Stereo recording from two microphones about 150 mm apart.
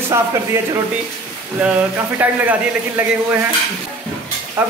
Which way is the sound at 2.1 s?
10° right (ahead or behind).